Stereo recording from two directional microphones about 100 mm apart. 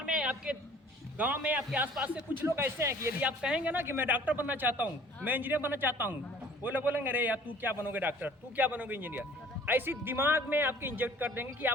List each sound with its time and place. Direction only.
0.0 s a sound: 10° right (ahead or behind)
1.2 s a man's voice: 15° right (ahead or behind)
3.2 s a man's voice: 10° right (ahead or behind)